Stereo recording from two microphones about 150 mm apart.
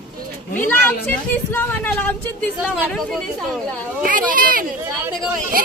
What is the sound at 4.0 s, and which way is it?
Speech, 65° right (ahead or behind).